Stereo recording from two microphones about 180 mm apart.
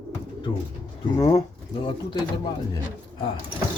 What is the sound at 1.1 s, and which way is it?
Speech, 30° left (ahead or behind).